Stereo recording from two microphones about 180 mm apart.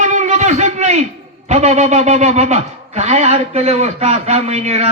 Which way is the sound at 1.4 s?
40° right (ahead or behind).